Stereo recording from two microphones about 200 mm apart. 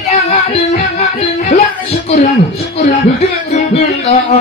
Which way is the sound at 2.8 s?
40° left (ahead or behind).